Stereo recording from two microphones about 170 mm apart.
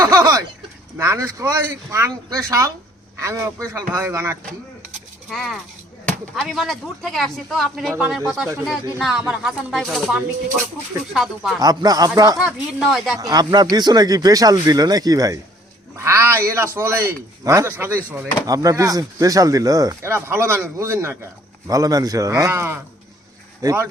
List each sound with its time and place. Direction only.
0.0 s a sound: 20° right (ahead or behind)
0.9 s speech: 15° right (ahead or behind)
5.3 s speech: centre (ahead or behind)
8.6 s speech: centre (ahead or behind)
11.6 s speech: 20° right (ahead or behind)
12.5 s speech: centre (ahead or behind)
13.1 s speech: 20° right (ahead or behind)